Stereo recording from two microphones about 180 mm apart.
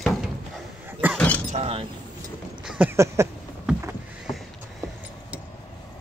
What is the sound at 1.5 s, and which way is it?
Speech, 35° right (ahead or behind).